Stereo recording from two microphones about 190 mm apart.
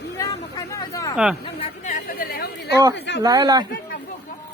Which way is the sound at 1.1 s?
5° right (ahead or behind).